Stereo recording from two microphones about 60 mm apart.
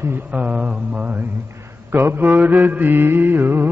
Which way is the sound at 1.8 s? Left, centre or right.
Right.